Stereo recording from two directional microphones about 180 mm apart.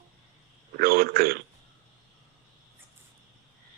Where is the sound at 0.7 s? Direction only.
55° right (ahead or behind).